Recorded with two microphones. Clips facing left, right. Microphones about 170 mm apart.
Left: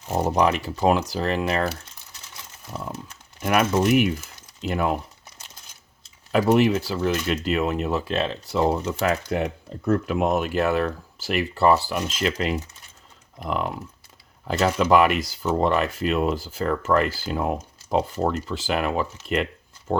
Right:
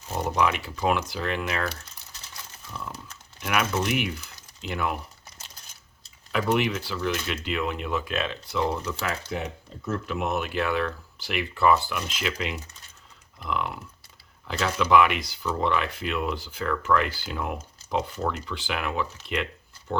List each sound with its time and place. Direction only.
0.1 s speech: 35° left (ahead or behind)
6.3 s speech: 40° left (ahead or behind)
9.3 s speech: 60° left (ahead or behind); by 20.0 s 40° left (ahead or behind)